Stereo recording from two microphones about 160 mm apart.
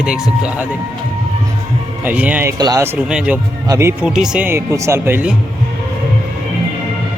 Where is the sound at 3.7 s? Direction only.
15° right (ahead or behind).